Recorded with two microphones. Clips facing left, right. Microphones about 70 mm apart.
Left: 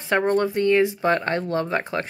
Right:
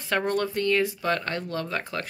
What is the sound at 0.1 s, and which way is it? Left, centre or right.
Speech, left.